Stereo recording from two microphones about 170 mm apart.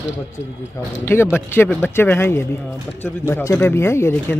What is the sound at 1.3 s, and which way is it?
Speech, 15° left (ahead or behind).